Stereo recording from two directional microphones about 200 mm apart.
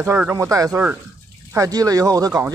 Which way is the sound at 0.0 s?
10° right (ahead or behind).